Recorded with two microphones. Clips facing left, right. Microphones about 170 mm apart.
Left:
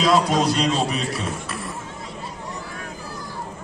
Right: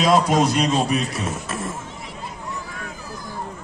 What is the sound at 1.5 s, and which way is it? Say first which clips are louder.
Music: right 3 dB; 45° right (ahead or behind).